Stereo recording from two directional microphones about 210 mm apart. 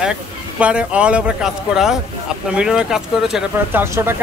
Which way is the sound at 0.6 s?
5° right (ahead or behind).